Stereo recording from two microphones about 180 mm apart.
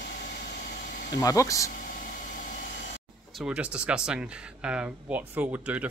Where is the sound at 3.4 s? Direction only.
5° right (ahead or behind).